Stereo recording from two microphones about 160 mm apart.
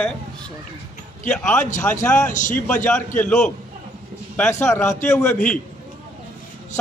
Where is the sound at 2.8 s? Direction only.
10° left (ahead or behind).